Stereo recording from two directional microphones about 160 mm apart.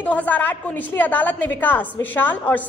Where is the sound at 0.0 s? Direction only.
10° left (ahead or behind).